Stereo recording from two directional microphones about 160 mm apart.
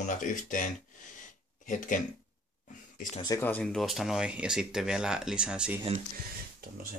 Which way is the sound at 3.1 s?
25° left (ahead or behind).